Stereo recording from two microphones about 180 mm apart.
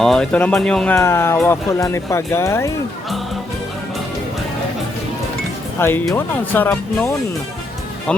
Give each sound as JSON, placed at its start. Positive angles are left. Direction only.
{"t": 0.0, "sound": "speech", "side_deg": 5}
{"t": 5.8, "sound": "speech", "side_deg": 15}